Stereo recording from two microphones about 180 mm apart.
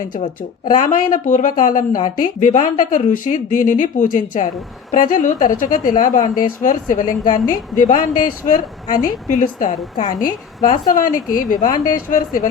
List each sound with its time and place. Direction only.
0.9 s a woman's voice: 45° left (ahead or behind)